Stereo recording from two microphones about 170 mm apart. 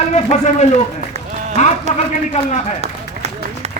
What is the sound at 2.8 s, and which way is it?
Run, 40° right (ahead or behind).